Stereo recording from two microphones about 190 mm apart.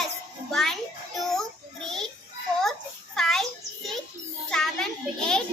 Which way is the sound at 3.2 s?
Centre (ahead or behind).